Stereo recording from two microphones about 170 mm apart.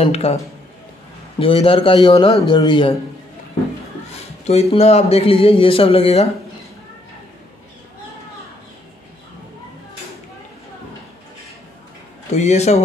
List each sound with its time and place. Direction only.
0.0 s speech: 35° left (ahead or behind)
1.4 s a man's voice: 30° left (ahead or behind)
4.1 s speech: 40° left (ahead or behind)
12.4 s speech: 40° left (ahead or behind)